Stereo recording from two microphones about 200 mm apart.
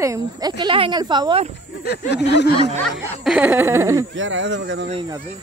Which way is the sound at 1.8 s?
55° left (ahead or behind).